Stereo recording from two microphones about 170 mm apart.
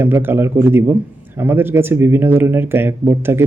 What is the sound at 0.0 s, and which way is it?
Speech, 15° right (ahead or behind).